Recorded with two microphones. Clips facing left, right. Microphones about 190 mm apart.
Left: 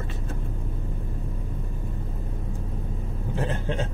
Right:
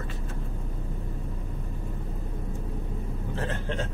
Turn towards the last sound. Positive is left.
turn(degrees=15)  # may be behind; listen again after turning